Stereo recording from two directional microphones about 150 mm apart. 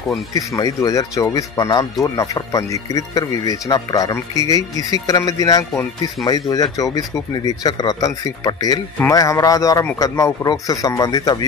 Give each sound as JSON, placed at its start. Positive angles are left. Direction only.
{"t": 0.3, "sound": "speech", "side_deg": 20}